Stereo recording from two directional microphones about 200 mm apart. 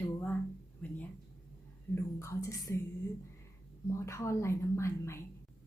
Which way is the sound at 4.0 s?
15° left (ahead or behind).